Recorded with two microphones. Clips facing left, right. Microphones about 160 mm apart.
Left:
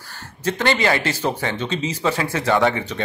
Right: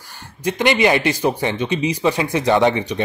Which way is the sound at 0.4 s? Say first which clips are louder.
Right 3 dB; 15° right (ahead or behind).